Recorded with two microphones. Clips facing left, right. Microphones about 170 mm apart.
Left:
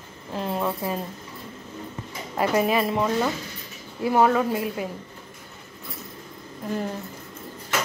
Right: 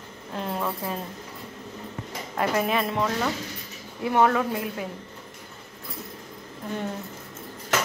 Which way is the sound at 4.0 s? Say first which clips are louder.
Left 2 dB; 5° left (ahead or behind).